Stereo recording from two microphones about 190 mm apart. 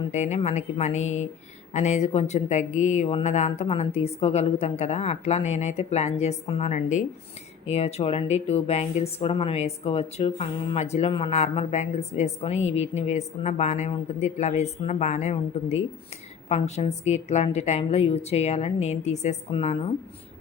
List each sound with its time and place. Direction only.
0.1 s speech: 35° left (ahead or behind)